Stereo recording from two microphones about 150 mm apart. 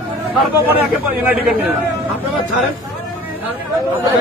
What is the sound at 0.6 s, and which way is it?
Speech, 10° right (ahead or behind).